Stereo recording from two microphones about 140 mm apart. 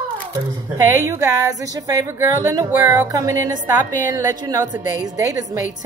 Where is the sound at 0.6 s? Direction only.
15° right (ahead or behind).